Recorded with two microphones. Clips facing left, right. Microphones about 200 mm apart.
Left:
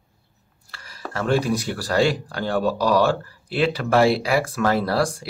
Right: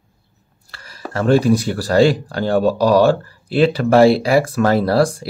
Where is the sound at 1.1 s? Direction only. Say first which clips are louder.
Right 7 dB; 35° right (ahead or behind).